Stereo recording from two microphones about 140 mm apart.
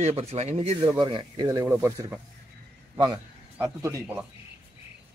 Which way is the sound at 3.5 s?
20° right (ahead or behind).